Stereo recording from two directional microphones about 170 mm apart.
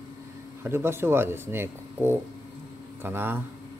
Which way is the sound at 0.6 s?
15° right (ahead or behind).